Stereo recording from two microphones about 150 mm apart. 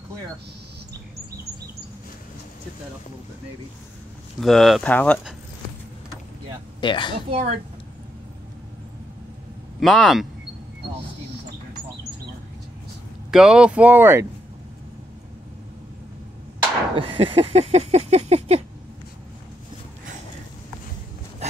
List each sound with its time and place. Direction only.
4.4 s speech: centre (ahead or behind)
6.8 s a woman's voice: 30° left (ahead or behind)
7.2 s a woman's voice: 40° right (ahead or behind)
9.8 s speech: centre (ahead or behind)
13.3 s speech: 5° right (ahead or behind)
16.9 s a sound: 35° right (ahead or behind)